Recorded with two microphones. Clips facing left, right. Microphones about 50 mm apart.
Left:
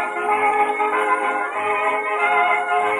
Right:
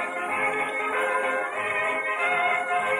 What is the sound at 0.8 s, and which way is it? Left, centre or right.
Music, left.